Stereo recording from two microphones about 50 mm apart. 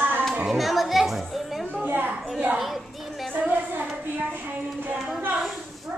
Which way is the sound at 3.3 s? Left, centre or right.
Right.